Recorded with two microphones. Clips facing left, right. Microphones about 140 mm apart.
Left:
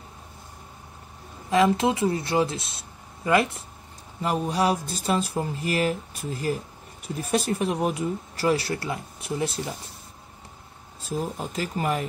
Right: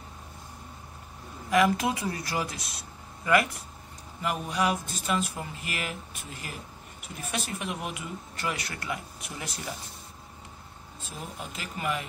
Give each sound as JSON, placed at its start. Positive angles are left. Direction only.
{"t": 1.5, "sound": "speech", "side_deg": 25}
{"t": 11.0, "sound": "speech", "side_deg": 35}